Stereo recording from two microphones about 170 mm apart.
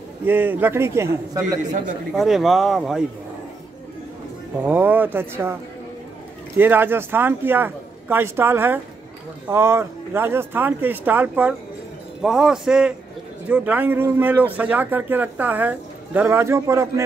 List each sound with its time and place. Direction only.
0.2 s speech: 10° right (ahead or behind)
1.6 s speech: 45° right (ahead or behind)
2.1 s speech: centre (ahead or behind)
4.6 s speech: 10° right (ahead or behind)
6.6 s speech: 10° right (ahead or behind)